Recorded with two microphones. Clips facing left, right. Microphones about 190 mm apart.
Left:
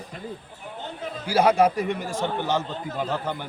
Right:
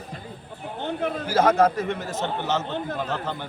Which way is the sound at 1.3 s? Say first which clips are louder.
Left 1 dB; 10° left (ahead or behind).